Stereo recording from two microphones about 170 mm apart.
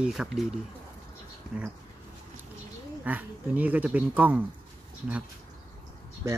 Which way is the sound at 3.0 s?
10° right (ahead or behind).